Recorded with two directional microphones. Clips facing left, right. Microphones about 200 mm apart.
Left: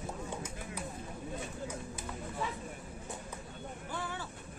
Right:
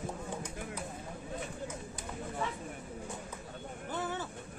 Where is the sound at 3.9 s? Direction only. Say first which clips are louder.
Right 5 dB; 20° right (ahead or behind).